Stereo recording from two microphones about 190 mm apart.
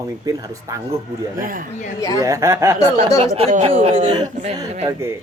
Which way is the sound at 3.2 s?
30° right (ahead or behind).